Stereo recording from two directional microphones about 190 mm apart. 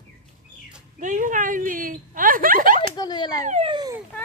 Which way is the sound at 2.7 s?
20° left (ahead or behind).